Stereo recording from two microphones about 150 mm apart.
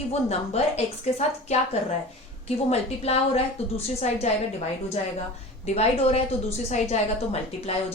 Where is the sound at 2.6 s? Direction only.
40° left (ahead or behind).